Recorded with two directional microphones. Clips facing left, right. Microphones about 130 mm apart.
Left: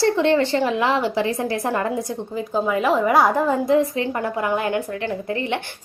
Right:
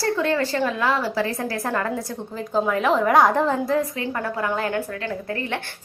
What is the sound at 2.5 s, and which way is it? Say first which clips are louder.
A woman's voice: even; 5° left (ahead or behind).